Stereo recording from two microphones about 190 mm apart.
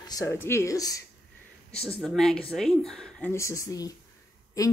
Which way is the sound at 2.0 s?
Centre (ahead or behind).